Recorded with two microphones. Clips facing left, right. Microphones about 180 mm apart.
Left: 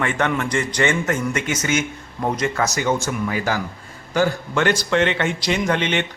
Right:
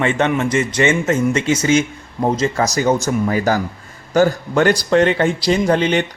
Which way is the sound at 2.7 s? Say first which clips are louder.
Right 5 dB; 40° right (ahead or behind).